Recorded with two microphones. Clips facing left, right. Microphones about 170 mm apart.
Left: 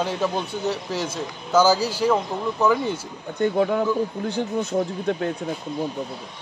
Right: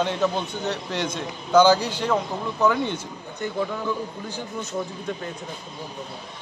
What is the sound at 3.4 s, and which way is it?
Speech, 60° left (ahead or behind).